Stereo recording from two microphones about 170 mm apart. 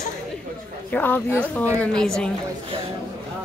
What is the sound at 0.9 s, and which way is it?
A woman's voice, 10° left (ahead or behind).